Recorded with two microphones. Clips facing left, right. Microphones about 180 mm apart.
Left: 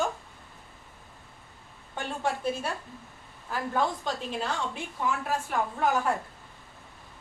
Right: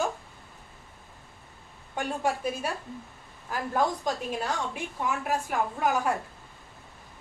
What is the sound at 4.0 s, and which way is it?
Speech, 15° right (ahead or behind).